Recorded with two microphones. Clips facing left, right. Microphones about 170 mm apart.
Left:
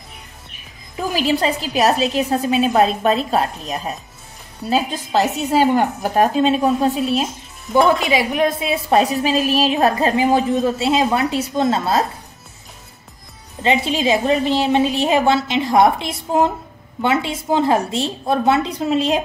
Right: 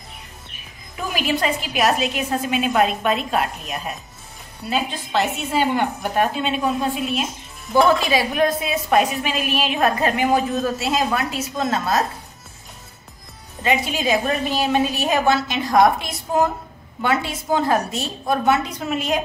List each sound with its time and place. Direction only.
1.1 s a woman's voice: 30° left (ahead or behind)
7.7 s a woman's voice: 20° left (ahead or behind)
13.6 s a woman's voice: 25° left (ahead or behind)